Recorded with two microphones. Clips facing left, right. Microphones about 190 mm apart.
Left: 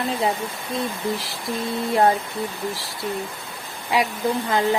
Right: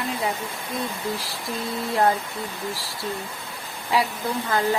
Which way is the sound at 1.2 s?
20° left (ahead or behind).